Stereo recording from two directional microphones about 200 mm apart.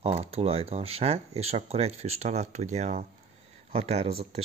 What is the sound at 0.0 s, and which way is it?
Speech, 30° right (ahead or behind).